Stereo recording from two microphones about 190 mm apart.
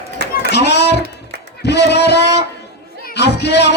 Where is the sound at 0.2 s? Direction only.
60° right (ahead or behind).